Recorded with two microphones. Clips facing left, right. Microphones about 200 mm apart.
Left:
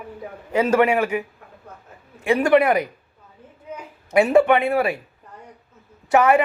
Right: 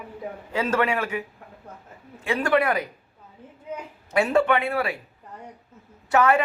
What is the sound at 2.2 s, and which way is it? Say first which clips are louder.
Speech: left 6 dB; 15° left (ahead or behind).